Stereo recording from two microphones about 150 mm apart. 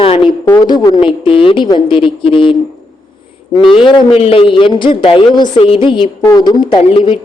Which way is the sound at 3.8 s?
35° left (ahead or behind).